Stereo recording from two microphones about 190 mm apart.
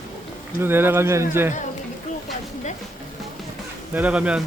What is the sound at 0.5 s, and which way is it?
Speech, 10° right (ahead or behind).